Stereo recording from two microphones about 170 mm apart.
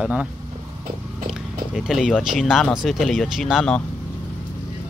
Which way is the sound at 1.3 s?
Centre (ahead or behind).